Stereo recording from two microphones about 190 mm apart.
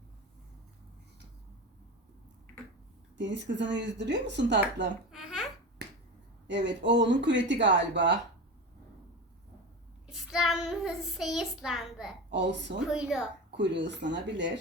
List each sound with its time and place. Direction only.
3.2 s speech: 65° right (ahead or behind)
6.5 s speech: 70° right (ahead or behind)
10.1 s child singing: centre (ahead or behind)
12.3 s speech: 65° right (ahead or behind)
12.8 s child singing: 5° right (ahead or behind)
13.6 s speech: 65° right (ahead or behind)